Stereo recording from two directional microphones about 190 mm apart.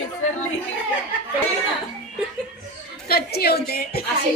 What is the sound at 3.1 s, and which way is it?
Speech, 55° left (ahead or behind).